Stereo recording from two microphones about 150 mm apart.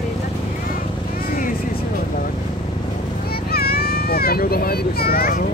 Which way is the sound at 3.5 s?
90° left.